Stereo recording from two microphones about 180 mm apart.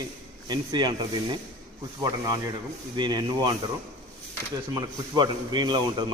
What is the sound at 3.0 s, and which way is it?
Speech, 25° right (ahead or behind).